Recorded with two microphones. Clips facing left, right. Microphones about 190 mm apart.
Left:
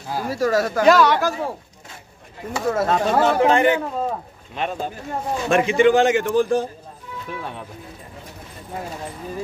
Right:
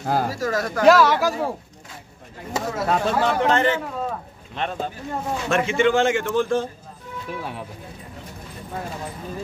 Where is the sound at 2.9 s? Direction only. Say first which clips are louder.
Left 1 dB; 5° left (ahead or behind).